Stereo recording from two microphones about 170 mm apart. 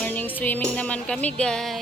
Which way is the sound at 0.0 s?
10° left (ahead or behind).